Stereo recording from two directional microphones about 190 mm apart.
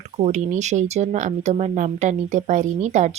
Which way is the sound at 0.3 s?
40° right (ahead or behind).